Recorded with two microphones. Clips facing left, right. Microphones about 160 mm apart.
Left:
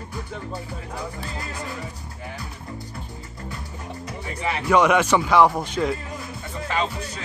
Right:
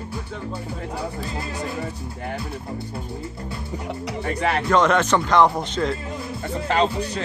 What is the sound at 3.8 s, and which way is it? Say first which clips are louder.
Music: right 7 dB; 70° right (ahead or behind).